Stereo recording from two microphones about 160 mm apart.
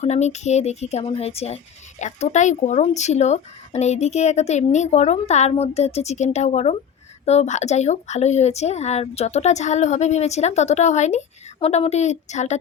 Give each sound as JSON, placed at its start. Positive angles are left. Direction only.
{"t": 0.0, "sound": "speech", "side_deg": 45}